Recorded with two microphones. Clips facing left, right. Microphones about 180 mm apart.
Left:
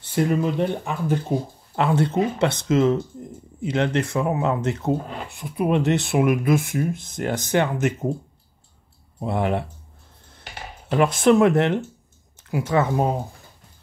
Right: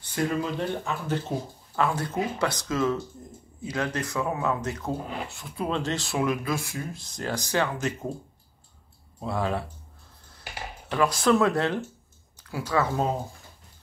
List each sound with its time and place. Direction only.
0.0 s speech: 20° left (ahead or behind)
1.8 s speech: 25° left (ahead or behind)
9.2 s speech: 20° left (ahead or behind)
10.9 s speech: 25° left (ahead or behind)